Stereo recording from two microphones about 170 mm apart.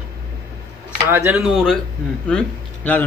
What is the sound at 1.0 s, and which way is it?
A man's voice, 10° right (ahead or behind).